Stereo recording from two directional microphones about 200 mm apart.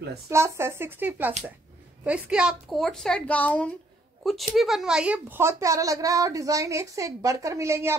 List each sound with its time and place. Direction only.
0.3 s a woman's voice: 15° right (ahead or behind)